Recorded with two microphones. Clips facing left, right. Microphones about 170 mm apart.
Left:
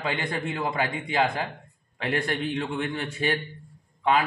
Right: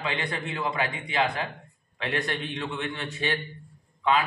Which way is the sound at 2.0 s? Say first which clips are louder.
Left 3 dB; 40° left (ahead or behind).